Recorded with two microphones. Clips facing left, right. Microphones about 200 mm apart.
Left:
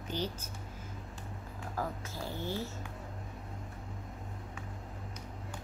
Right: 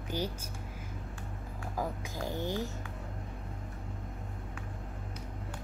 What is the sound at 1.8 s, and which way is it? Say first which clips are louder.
Speech: right 2 dB; 15° right (ahead or behind).